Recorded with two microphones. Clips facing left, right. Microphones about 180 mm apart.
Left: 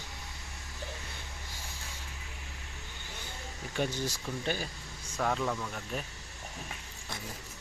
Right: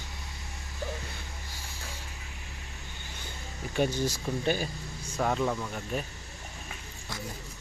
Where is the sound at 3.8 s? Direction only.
15° right (ahead or behind).